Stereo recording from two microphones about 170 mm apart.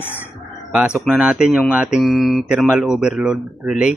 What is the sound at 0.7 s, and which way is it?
Speech, 5° right (ahead or behind).